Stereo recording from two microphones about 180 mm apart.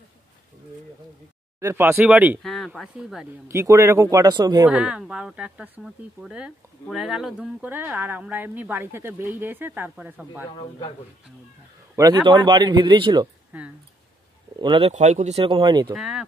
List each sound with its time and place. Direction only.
1.6 s speech: 15° right (ahead or behind)
3.4 s speech: 15° right (ahead or behind)
4.6 s speech: 5° right (ahead or behind)
10.5 s a man's voice: 25° left (ahead or behind)
11.9 s a man's voice: 20° right (ahead or behind)
13.5 s speech: 10° right (ahead or behind)
14.6 s speech: 30° right (ahead or behind)
15.9 s speech: 5° right (ahead or behind)